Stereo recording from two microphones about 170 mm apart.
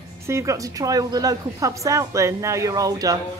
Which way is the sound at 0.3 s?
20° right (ahead or behind).